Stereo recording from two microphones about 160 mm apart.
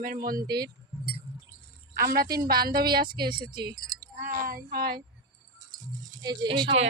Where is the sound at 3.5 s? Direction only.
25° right (ahead or behind).